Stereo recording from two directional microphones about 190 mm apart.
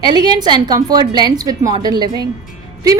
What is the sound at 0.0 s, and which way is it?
A woman's voice, 20° right (ahead or behind).